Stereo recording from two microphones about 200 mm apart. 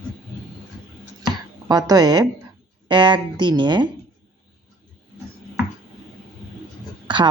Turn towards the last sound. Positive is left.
turn(degrees=-20)  # may be behind; listen again after turning